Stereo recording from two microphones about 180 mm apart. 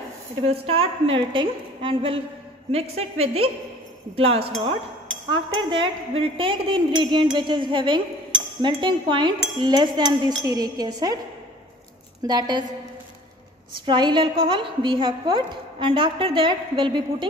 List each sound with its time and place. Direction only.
0.4 s a woman's voice: 35° right (ahead or behind)
12.2 s a woman's voice: 25° right (ahead or behind)
13.8 s a woman's voice: 25° right (ahead or behind)